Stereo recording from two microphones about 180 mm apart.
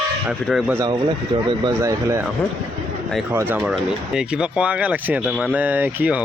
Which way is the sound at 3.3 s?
10° right (ahead or behind).